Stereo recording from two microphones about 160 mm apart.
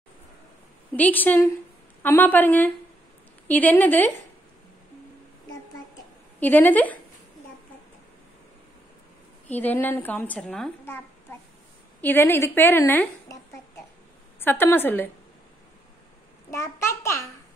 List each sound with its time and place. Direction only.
0.9 s a child's voice: 10° left (ahead or behind)
6.4 s a child's voice: 10° left (ahead or behind)
9.5 s a child's voice: 10° left (ahead or behind)
12.0 s a woman's voice: 15° left (ahead or behind)
16.4 s a child's voice: 15° left (ahead or behind)